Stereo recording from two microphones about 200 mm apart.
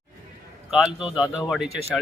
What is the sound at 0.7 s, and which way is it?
Speech, centre (ahead or behind).